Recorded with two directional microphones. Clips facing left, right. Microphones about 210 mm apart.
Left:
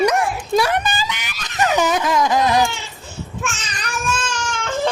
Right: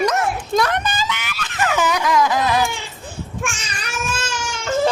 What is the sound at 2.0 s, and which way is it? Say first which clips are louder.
Speech: left 1 dB; 20° left (ahead or behind).